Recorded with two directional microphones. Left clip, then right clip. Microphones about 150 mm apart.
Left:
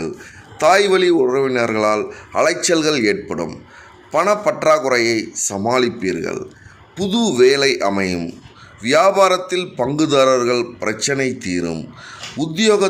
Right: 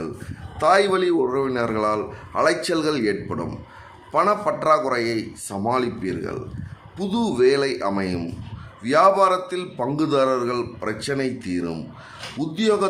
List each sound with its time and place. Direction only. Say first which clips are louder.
0.6 s a man's voice: left 5 dB; 20° left (ahead or behind)